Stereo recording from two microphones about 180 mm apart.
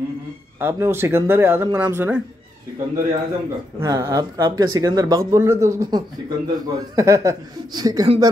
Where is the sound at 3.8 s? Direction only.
15° right (ahead or behind).